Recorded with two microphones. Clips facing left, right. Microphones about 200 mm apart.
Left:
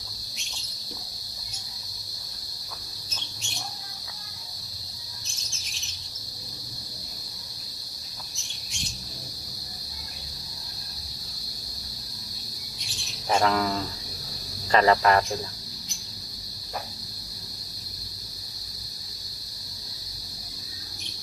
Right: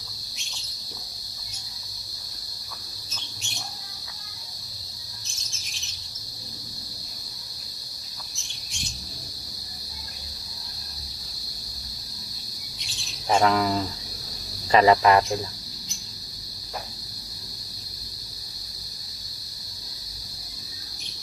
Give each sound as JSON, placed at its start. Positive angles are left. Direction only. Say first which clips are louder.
{"t": 13.2, "sound": "cricket", "louder": "right 2 dB", "side_deg": 0}
{"t": 14.7, "sound": "speech", "louder": "right 3 dB", "side_deg": -5}